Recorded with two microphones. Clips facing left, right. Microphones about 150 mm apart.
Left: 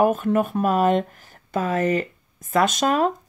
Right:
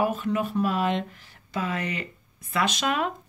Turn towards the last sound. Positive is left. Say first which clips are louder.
# left 6 dB
turn(degrees=40)  # may be behind; listen again after turning